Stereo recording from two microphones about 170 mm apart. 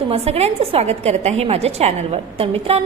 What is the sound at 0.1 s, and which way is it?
A woman's voice, 35° right (ahead or behind).